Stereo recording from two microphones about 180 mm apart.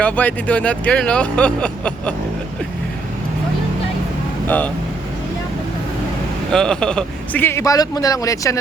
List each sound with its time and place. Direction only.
0.0 s speech: 10° left (ahead or behind)
4.4 s speech: 10° left (ahead or behind)
6.5 s speech: 5° left (ahead or behind)